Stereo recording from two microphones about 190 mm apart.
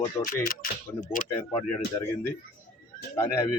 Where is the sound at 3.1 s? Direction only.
15° left (ahead or behind).